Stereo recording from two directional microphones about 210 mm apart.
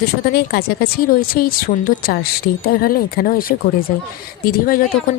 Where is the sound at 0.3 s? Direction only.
45° left (ahead or behind).